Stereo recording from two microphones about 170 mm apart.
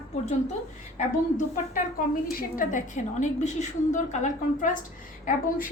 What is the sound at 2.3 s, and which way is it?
A woman's voice, 50° left (ahead or behind).